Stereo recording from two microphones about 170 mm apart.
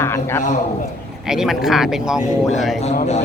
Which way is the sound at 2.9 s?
40° left (ahead or behind).